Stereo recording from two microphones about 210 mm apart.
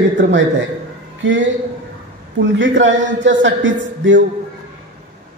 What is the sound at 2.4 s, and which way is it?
A man's voice, 60° right (ahead or behind).